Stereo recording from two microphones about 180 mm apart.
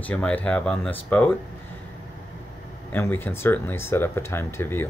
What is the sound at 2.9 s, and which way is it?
Speech, 10° left (ahead or behind).